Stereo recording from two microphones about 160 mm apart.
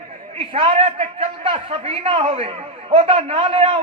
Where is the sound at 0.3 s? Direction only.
35° right (ahead or behind).